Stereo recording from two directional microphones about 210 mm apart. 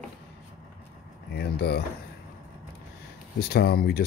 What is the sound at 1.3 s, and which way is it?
Speech, 50° left (ahead or behind).